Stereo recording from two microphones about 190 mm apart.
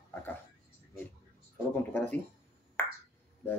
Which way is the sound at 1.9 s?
10° left (ahead or behind).